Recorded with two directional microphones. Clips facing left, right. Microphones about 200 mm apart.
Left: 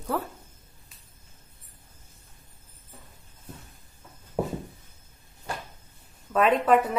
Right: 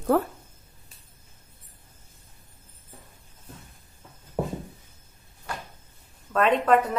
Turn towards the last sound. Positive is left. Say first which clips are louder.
# even
turn(degrees=5)  # may be behind; listen again after turning